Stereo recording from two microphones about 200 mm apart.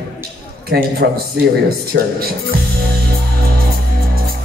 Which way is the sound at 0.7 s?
55° right (ahead or behind).